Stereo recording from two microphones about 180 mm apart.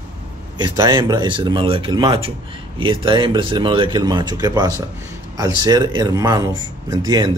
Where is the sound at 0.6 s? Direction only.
20° right (ahead or behind).